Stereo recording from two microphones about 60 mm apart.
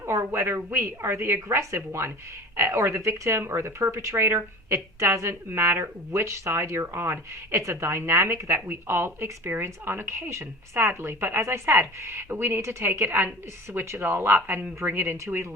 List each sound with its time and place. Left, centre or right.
0.3 s speech: right
2.6 s speech: right
5.3 s speech: right